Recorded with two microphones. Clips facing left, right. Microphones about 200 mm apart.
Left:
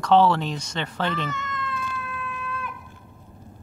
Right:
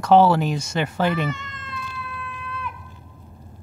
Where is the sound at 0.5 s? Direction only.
25° right (ahead or behind).